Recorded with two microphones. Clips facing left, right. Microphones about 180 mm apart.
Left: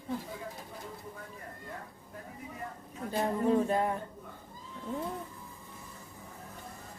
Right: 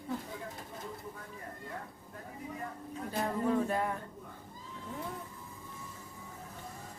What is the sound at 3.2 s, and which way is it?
Music, 25° left (ahead or behind).